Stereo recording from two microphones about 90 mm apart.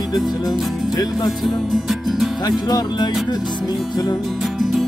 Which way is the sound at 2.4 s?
50° left (ahead or behind).